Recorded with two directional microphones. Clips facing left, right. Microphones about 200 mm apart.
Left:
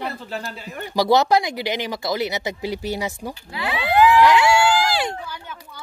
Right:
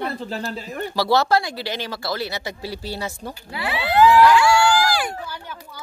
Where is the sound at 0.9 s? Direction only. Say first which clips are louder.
Left 2 dB; 20° left (ahead or behind).